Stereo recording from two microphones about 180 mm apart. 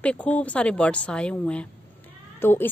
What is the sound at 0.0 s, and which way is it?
A woman's voice, 5° left (ahead or behind).